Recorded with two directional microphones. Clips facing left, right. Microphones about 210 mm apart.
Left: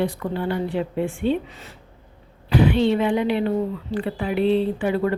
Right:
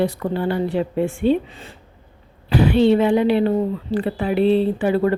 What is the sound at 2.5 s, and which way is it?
Speech, 35° right (ahead or behind).